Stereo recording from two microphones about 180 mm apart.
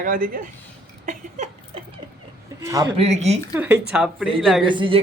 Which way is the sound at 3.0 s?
35° right (ahead or behind).